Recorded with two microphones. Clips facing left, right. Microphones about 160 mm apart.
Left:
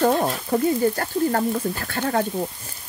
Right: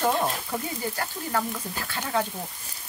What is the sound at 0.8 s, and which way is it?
Frying, 50° left (ahead or behind).